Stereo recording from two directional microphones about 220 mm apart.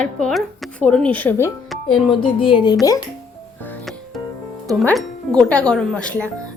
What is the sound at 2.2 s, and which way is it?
Speech, 25° left (ahead or behind).